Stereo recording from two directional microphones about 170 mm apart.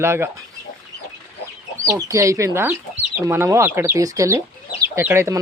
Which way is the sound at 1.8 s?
20° right (ahead or behind).